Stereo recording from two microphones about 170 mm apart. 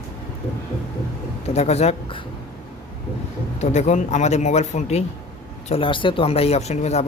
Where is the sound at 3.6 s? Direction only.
45° left (ahead or behind).